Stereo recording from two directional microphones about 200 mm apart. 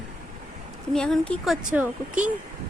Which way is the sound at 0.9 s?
5° left (ahead or behind).